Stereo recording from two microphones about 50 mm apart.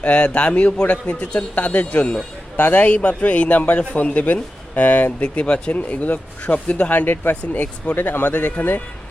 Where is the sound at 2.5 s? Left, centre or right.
Left; by 5.7 s centre.